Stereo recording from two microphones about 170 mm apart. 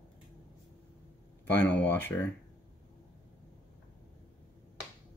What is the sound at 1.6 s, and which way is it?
Speech, 10° left (ahead or behind).